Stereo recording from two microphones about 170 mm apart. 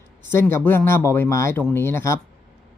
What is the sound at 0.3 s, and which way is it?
A man's voice, 15° left (ahead or behind).